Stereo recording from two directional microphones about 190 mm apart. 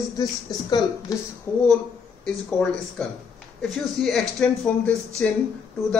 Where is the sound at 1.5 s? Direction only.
10° left (ahead or behind).